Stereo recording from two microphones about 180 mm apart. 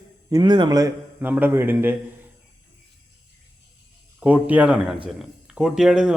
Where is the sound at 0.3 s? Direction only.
25° right (ahead or behind).